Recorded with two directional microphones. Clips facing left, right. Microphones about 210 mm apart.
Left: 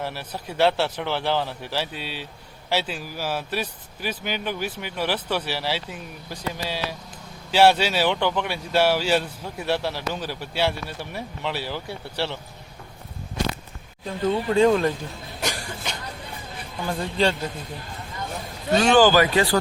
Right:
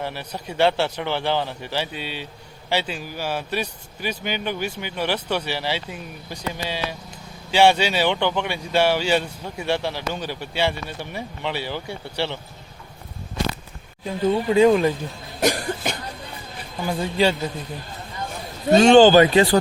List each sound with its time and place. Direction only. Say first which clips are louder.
0.0 s speech: right 1 dB; 5° left (ahead or behind)
14.3 s speech: right 3 dB; 5° right (ahead or behind)
15.4 s cough: right 9 dB; 50° right (ahead or behind)
16.8 s speech: right 2 dB; 5° right (ahead or behind)
18.7 s speech: right 5 dB; 25° right (ahead or behind)